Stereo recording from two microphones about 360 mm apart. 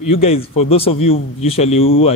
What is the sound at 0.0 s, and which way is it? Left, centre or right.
A man's voice, centre.